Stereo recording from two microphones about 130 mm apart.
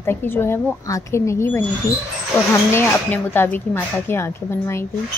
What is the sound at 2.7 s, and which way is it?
Speech, 15° left (ahead or behind).